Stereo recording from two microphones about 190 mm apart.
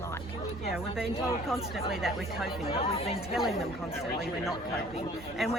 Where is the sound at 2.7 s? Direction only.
30° left (ahead or behind).